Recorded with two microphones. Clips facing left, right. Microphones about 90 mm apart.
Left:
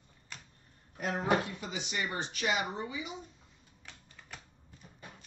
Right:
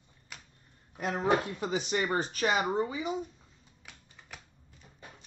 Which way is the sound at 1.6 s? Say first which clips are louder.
Right 7 dB; 45° right (ahead or behind).